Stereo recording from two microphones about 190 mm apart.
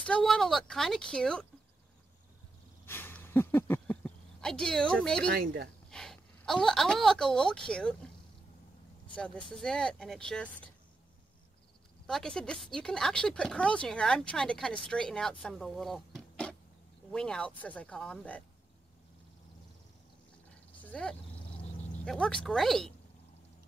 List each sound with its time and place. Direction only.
0.0 s speech: 5° left (ahead or behind)
2.9 s a sound: 10° left (ahead or behind)
5.3 s speech: 55° right (ahead or behind)
5.9 s speech: 5° left (ahead or behind)
9.0 s speech: 5° left (ahead or behind)
12.1 s speech: 5° left (ahead or behind)
20.8 s speech: 5° left (ahead or behind)